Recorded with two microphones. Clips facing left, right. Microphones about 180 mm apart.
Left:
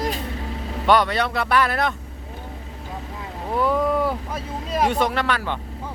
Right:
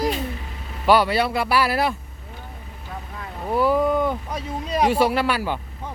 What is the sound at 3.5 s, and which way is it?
Speech, centre (ahead or behind).